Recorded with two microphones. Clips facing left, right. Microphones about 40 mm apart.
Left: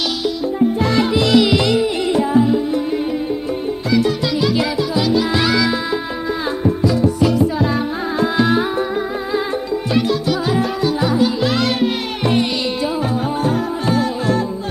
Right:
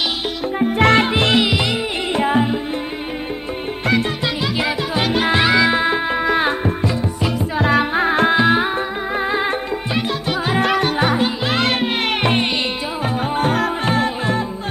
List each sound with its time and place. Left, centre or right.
0.6 s music: right
1.4 s music: right
2.1 s music: right
4.9 s music: right
5.4 s music: right
7.0 s music: right
7.6 s music: right
8.4 s music: right
10.6 s music: right